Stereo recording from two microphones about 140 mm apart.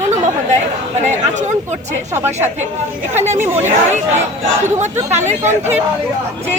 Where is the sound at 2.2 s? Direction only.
15° right (ahead or behind).